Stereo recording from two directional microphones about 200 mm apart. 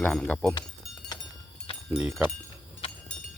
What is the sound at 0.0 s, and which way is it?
Speech, 5° left (ahead or behind).